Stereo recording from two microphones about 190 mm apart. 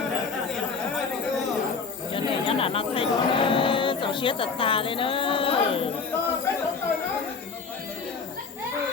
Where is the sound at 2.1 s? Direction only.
30° left (ahead or behind).